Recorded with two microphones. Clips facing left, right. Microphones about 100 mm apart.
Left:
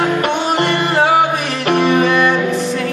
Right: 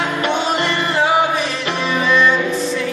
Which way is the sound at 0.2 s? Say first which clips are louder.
Left 2 dB; 50° left (ahead or behind).